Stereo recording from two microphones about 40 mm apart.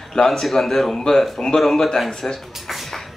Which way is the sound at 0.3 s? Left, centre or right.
Centre.